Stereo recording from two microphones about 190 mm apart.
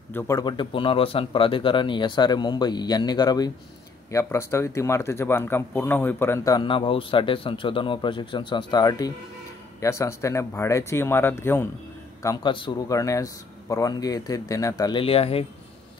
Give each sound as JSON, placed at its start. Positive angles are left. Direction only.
{"t": 0.1, "sound": "speech", "side_deg": 15}